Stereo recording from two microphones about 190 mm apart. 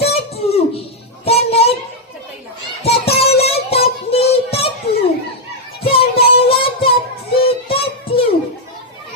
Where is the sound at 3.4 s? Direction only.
30° left (ahead or behind).